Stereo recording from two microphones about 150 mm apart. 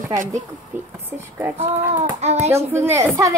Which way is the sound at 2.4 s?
15° right (ahead or behind).